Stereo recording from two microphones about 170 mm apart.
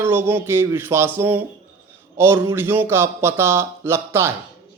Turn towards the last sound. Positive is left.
turn(degrees=-15)  # may be behind; listen again after turning